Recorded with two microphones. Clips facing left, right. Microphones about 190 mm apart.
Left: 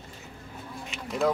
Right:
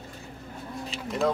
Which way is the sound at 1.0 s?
Centre (ahead or behind).